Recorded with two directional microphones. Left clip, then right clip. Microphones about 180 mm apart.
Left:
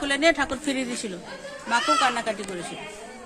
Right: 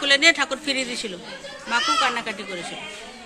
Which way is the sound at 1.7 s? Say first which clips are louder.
Right 1 dB; 70° left (ahead or behind).